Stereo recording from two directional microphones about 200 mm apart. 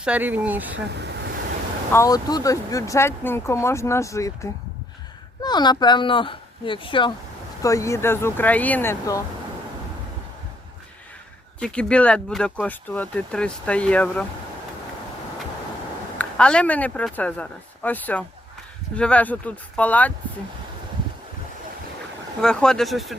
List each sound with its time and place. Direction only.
0.0 s speech: 5° right (ahead or behind)
0.7 s speech: 60° right (ahead or behind)
1.9 s speech: 15° left (ahead or behind)
11.6 s speech: 5° left (ahead or behind)
16.1 s speech: 5° left (ahead or behind)
22.4 s speech: 5° left (ahead or behind)